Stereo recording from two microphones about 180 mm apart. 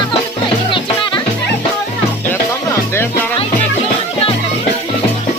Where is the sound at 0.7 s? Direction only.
25° left (ahead or behind).